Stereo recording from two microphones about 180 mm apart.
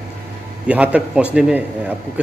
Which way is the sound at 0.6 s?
5° right (ahead or behind).